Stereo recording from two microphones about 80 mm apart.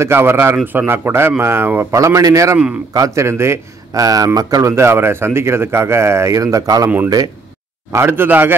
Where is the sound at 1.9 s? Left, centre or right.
Right.